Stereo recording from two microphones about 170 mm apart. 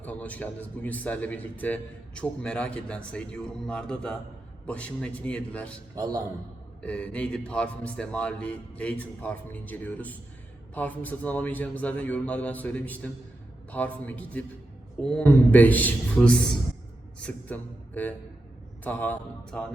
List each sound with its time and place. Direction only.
0.0 s a man's voice: 10° left (ahead or behind)
6.0 s a man's voice: 20° right (ahead or behind)
6.8 s a man's voice: 5° left (ahead or behind)